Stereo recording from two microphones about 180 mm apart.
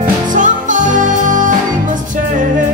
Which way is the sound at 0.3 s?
45° right (ahead or behind).